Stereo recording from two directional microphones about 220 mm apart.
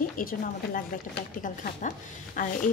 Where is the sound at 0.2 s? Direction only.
40° left (ahead or behind).